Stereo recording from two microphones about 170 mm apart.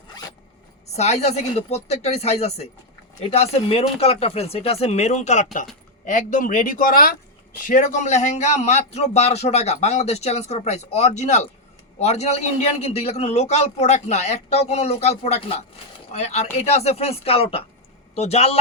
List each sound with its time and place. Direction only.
0.9 s a man's voice: 40° left (ahead or behind)